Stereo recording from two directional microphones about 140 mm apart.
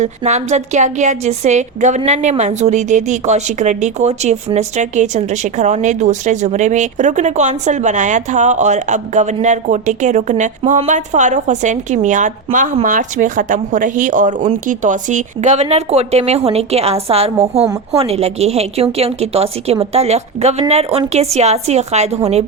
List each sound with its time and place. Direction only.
0.0 s a woman's voice: 55° right (ahead or behind)